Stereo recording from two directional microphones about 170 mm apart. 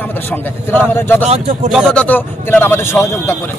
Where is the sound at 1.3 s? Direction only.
45° right (ahead or behind).